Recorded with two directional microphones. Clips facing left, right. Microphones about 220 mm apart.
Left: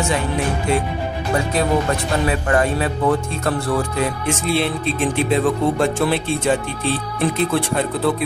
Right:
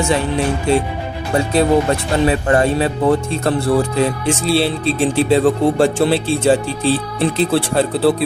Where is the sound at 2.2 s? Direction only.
30° right (ahead or behind).